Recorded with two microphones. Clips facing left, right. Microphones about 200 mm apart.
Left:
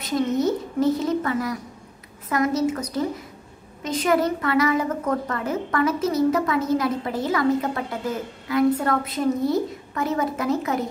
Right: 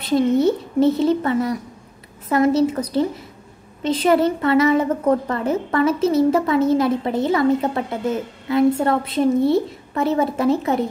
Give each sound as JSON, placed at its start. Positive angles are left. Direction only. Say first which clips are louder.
{"t": 0.0, "sound": "a woman's voice", "louder": "right 5 dB", "side_deg": -30}